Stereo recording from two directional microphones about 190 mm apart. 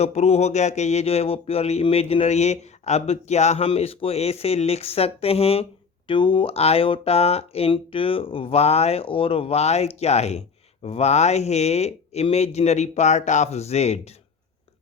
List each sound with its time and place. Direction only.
0.0 s speech: 35° left (ahead or behind)